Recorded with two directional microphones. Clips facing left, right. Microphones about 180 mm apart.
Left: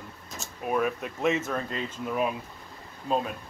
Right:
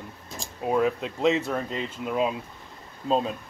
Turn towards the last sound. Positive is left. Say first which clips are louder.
# right 3 dB
turn(degrees=-25)  # may be behind; listen again after turning